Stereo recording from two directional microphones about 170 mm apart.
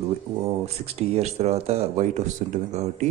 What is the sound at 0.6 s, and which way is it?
Speech, 35° right (ahead or behind).